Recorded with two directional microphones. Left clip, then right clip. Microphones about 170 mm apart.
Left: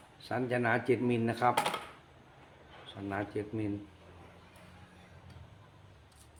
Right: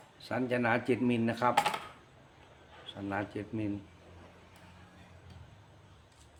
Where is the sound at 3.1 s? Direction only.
15° right (ahead or behind).